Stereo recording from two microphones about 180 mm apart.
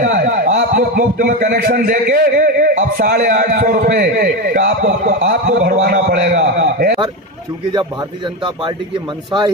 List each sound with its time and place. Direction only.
0.0 s a sound: 45° right (ahead or behind)
0.5 s a man's voice: 50° right (ahead or behind)
5.2 s a man's voice: 75° right (ahead or behind)
6.0 s a man's voice: 60° right (ahead or behind)